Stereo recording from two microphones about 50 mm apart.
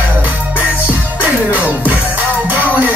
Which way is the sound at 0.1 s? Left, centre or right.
Right.